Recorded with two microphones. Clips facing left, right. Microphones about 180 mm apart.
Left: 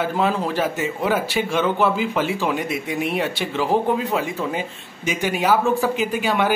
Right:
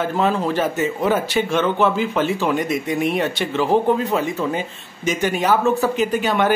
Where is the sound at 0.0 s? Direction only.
10° left (ahead or behind).